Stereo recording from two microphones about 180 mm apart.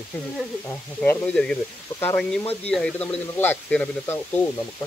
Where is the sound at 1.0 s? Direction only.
10° left (ahead or behind).